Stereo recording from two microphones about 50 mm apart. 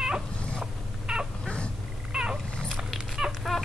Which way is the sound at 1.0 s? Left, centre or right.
Centre.